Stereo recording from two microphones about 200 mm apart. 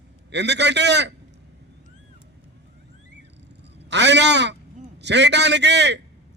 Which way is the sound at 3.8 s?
60° right (ahead or behind).